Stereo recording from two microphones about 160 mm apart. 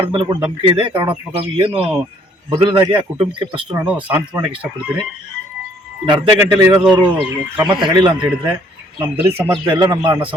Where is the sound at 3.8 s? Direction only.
10° right (ahead or behind).